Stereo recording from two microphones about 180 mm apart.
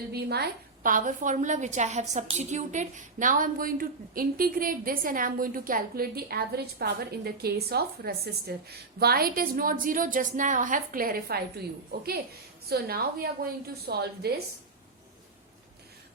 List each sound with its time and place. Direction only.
0.1 s a woman's voice: 60° right (ahead or behind)